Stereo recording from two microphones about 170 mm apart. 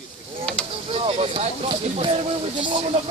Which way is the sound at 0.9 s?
35° right (ahead or behind).